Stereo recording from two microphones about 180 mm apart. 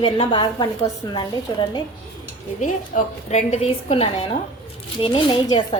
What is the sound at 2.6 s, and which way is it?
A woman's voice, 40° left (ahead or behind).